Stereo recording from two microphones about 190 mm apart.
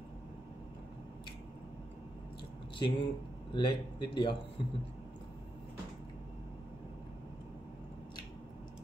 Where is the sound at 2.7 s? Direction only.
25° left (ahead or behind).